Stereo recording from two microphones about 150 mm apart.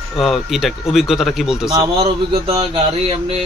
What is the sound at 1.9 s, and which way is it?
A man's voice, 40° right (ahead or behind).